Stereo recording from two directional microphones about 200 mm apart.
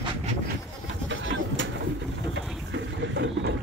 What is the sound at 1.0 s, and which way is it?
Bird, 65° right (ahead or behind).